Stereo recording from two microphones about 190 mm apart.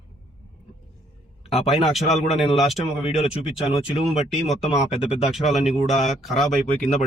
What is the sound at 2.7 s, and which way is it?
Speech, 35° left (ahead or behind).